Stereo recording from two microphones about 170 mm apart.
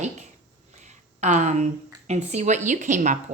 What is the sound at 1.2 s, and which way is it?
A woman's voice, 45° right (ahead or behind).